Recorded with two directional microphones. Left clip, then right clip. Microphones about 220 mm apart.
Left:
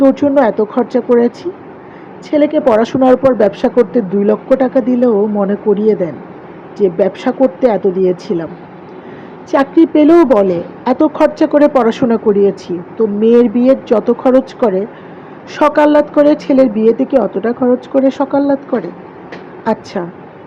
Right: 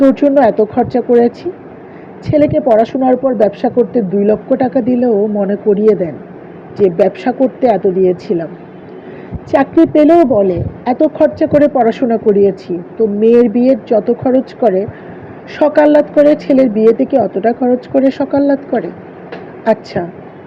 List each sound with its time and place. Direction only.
0.0 s speech: 15° left (ahead or behind)
9.5 s speech: 10° left (ahead or behind)